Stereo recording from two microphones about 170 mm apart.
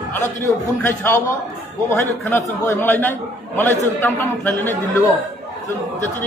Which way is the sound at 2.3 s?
15° left (ahead or behind).